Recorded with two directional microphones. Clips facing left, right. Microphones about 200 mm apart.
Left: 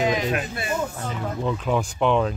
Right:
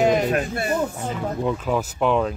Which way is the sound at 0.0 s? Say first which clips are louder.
Right 4 dB; 50° right (ahead or behind).